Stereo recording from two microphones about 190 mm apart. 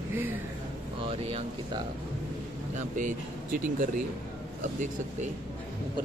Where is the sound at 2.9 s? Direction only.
45° right (ahead or behind).